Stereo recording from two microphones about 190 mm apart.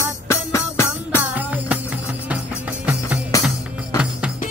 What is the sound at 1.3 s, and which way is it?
Music, 10° right (ahead or behind).